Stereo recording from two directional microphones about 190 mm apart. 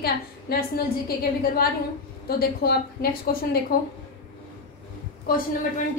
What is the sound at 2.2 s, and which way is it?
A woman's voice, 55° left (ahead or behind).